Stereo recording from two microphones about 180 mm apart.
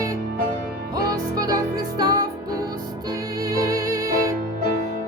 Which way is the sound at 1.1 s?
20° right (ahead or behind).